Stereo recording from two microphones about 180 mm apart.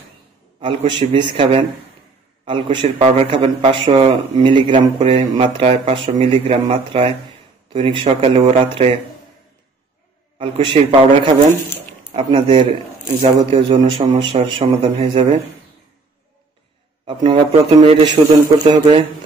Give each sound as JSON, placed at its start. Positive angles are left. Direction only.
{"t": 0.6, "sound": "a man's voice", "side_deg": -25}
{"t": 10.4, "sound": "a man's voice", "side_deg": -30}
{"t": 12.1, "sound": "a man's voice", "side_deg": -30}
{"t": 17.0, "sound": "a man's voice", "side_deg": -25}